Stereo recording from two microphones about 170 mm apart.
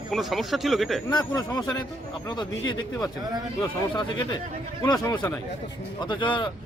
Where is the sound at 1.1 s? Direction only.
25° left (ahead or behind).